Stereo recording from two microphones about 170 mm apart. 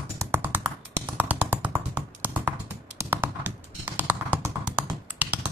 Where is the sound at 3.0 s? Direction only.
15° right (ahead or behind).